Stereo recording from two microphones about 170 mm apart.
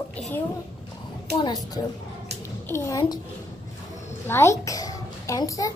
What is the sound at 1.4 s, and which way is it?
A child's voice, 20° left (ahead or behind).